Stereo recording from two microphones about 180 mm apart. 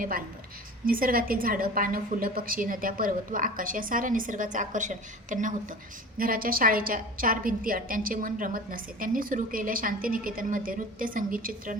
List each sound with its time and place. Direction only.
0.9 s a woman's voice: 50° right (ahead or behind)